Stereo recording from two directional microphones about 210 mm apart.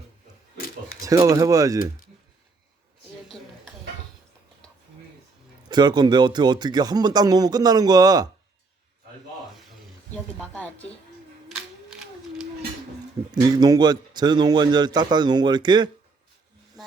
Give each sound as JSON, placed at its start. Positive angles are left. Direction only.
{"t": 1.0, "sound": "speech", "side_deg": -15}
{"t": 5.6, "sound": "speech", "side_deg": -20}
{"t": 10.4, "sound": "speech", "side_deg": 5}
{"t": 13.3, "sound": "speech", "side_deg": -20}